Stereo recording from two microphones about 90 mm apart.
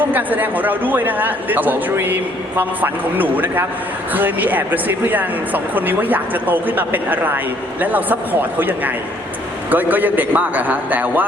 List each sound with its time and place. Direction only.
0.1 s a man's voice: 20° right (ahead or behind)